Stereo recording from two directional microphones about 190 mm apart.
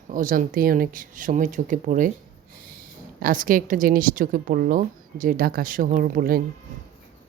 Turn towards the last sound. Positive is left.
turn(degrees=-50)  # may be behind; listen again after turning